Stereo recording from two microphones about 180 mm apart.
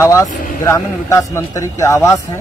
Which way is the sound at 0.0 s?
15° left (ahead or behind).